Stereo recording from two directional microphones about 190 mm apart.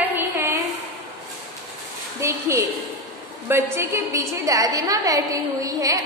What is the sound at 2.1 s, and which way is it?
A woman's voice, 15° right (ahead or behind).